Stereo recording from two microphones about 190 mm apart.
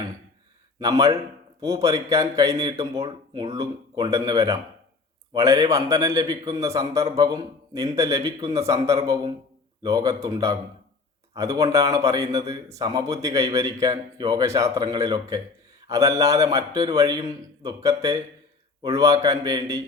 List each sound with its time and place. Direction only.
0.8 s speech: 15° right (ahead or behind)
3.0 s speech: 30° right (ahead or behind)
3.5 s a man's voice: 20° right (ahead or behind)